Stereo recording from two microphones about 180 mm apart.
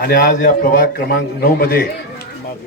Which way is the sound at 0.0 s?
60° left (ahead or behind).